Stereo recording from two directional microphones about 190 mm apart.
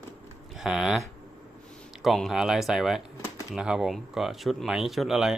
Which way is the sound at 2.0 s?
Centre (ahead or behind).